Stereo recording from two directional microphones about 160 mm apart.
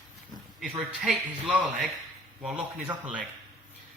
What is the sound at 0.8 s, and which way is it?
Speech, 5° right (ahead or behind).